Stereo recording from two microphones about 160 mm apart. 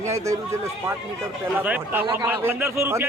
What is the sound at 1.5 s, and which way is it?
Speech, 10° right (ahead or behind).